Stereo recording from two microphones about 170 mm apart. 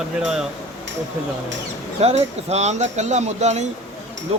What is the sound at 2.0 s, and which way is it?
Speech, 40° right (ahead or behind).